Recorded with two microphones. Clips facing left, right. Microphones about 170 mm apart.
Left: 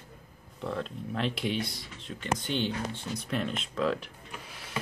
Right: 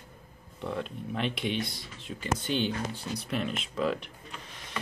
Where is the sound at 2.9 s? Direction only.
35° right (ahead or behind).